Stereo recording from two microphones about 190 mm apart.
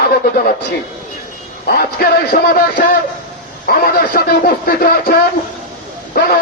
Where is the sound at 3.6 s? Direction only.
50° left (ahead or behind).